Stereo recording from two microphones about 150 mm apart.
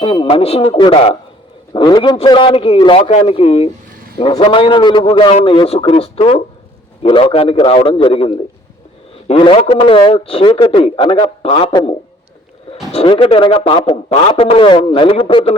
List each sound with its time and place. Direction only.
0.0 s a man's voice: 35° left (ahead or behind)